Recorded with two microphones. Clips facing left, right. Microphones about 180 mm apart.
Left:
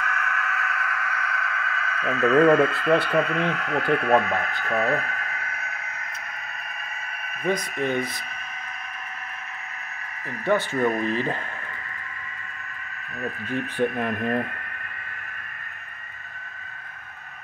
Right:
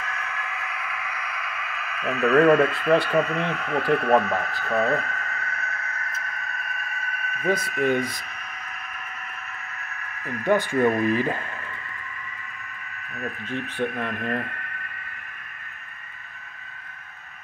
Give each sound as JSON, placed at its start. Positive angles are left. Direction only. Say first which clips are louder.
{"t": 0.4, "sound": "a sound", "louder": "left 4 dB", "side_deg": -15}
{"t": 7.4, "sound": "speech", "louder": "right 2 dB", "side_deg": -5}
{"t": 10.4, "sound": "speech", "louder": "right 2 dB", "side_deg": -15}
{"t": 13.5, "sound": "speech", "louder": "left 3 dB", "side_deg": 15}